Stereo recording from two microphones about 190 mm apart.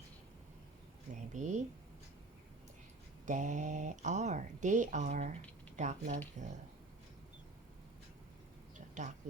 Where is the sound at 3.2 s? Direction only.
40° right (ahead or behind).